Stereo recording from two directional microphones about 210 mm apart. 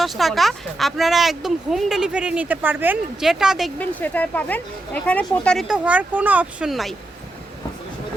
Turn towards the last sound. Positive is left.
turn(degrees=0)  # may be behind; listen again after turning